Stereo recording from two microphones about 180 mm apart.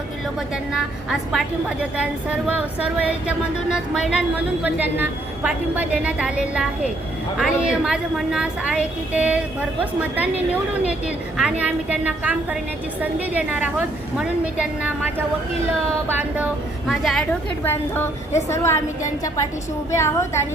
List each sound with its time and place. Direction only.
0.3 s a woman's voice: 5° right (ahead or behind)
16.8 s a woman's voice: centre (ahead or behind)
17.6 s a woman's voice: 10° left (ahead or behind)
19.9 s a woman's voice: 15° left (ahead or behind)